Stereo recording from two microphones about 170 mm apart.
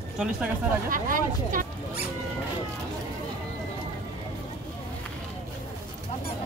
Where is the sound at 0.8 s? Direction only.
55° right (ahead or behind).